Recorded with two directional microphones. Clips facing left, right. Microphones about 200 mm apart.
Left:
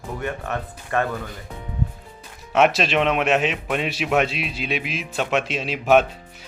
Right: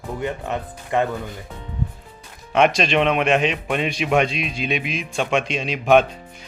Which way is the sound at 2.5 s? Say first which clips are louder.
Right 1 dB; 5° left (ahead or behind).